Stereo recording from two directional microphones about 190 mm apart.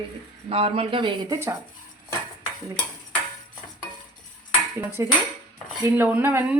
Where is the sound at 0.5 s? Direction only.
30° right (ahead or behind).